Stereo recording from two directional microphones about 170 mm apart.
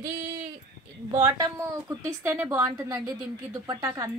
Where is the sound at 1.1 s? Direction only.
20° right (ahead or behind).